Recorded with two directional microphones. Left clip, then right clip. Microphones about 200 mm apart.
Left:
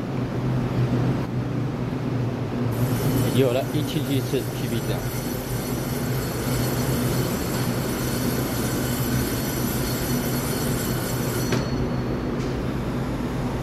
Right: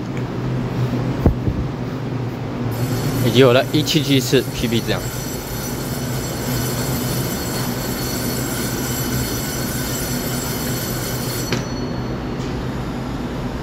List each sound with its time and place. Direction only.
3.3 s speech: 30° right (ahead or behind)